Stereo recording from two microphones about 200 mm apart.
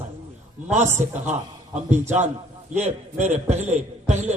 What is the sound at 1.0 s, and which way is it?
Speech, 35° right (ahead or behind).